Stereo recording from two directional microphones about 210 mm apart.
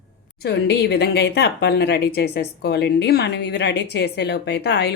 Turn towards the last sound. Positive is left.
turn(degrees=55)  # may be behind; listen again after turning